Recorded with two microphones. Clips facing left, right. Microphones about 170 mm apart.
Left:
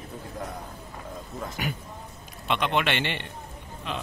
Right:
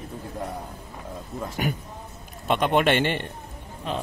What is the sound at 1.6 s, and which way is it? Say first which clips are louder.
A man's voice: right 4 dB; 45° right (ahead or behind).